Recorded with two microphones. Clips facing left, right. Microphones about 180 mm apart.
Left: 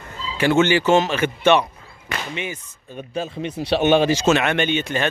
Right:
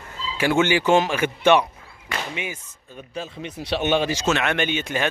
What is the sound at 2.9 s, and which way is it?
A man's voice, 65° left (ahead or behind).